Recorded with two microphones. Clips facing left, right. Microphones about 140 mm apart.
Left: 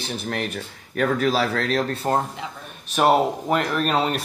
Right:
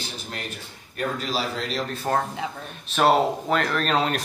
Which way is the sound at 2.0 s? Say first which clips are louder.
Left 1 dB; 15° left (ahead or behind).